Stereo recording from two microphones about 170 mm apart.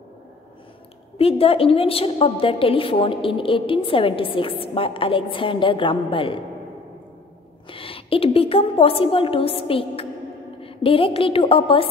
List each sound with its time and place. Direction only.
1.1 s a woman's voice: 35° left (ahead or behind)
7.7 s a woman's voice: 35° left (ahead or behind)